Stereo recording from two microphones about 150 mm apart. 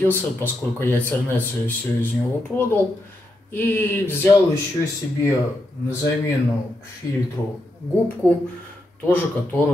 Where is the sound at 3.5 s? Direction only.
15° left (ahead or behind).